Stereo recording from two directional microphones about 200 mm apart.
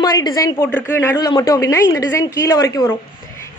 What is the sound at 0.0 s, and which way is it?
A woman's voice, 20° left (ahead or behind).